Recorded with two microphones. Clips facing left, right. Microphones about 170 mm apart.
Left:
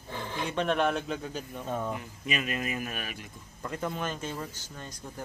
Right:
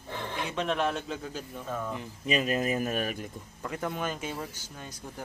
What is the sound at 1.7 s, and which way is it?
Speech, 25° left (ahead or behind).